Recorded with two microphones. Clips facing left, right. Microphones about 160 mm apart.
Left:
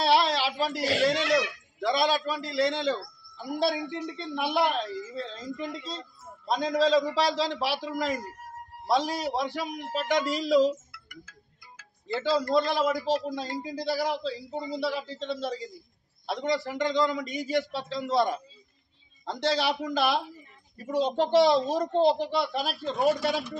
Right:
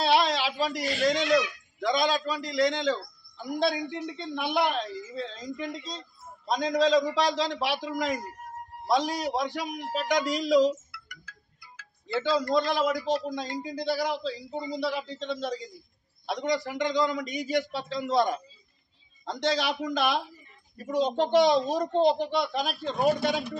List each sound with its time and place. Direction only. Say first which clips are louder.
0.0 s a sound: even; centre (ahead or behind)
1.0 s speech: right 2 dB; 5° left (ahead or behind)
10.9 s music: left 1 dB; 45° left (ahead or behind)
12.1 s a man's voice: even; centre (ahead or behind)